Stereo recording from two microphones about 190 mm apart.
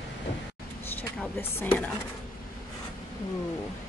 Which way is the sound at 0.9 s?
10° left (ahead or behind).